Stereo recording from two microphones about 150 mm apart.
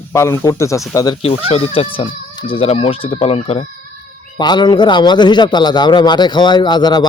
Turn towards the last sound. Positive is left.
turn(degrees=30)  # may be behind; listen again after turning